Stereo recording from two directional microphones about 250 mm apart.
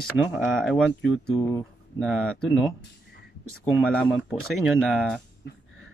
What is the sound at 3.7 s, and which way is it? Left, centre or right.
Speech, centre.